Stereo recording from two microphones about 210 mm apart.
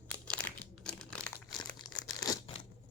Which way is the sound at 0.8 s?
5° left (ahead or behind).